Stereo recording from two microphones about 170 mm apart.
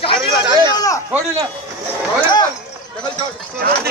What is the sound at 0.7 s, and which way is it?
Speech, 20° left (ahead or behind).